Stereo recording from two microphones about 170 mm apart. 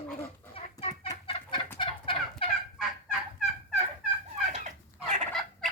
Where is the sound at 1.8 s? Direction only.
30° left (ahead or behind).